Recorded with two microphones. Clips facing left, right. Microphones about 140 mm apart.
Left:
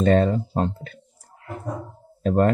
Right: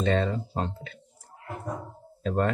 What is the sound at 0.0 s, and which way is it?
Speech, 45° left (ahead or behind).